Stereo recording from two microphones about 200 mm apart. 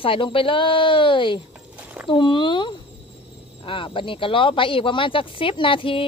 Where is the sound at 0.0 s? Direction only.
25° left (ahead or behind).